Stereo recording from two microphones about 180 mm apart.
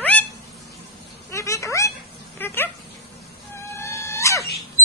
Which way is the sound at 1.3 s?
15° left (ahead or behind).